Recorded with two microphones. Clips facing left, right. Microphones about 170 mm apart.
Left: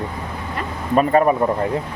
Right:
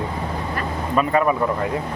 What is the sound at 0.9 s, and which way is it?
Speech, 40° left (ahead or behind).